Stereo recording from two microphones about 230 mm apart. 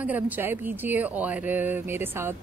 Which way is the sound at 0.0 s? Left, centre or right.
Centre.